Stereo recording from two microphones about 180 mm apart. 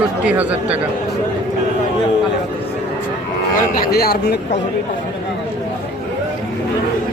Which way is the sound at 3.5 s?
55° left (ahead or behind).